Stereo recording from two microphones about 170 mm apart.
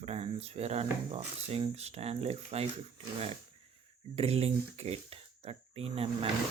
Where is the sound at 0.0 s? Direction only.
40° right (ahead or behind).